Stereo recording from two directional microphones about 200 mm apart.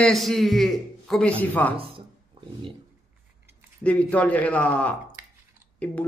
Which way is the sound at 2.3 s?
25° right (ahead or behind).